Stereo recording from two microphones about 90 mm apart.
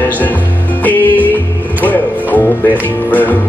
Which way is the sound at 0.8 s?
20° left (ahead or behind).